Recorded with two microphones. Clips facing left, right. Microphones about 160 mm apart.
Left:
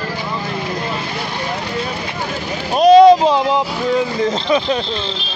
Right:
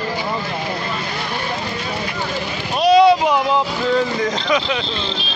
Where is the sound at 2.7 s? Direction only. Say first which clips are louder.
Left 5 dB; 45° left (ahead or behind).